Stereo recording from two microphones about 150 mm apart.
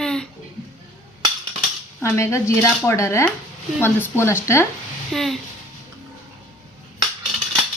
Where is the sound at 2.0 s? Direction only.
20° left (ahead or behind).